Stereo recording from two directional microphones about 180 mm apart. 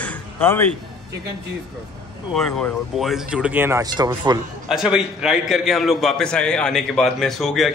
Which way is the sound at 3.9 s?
25° right (ahead or behind).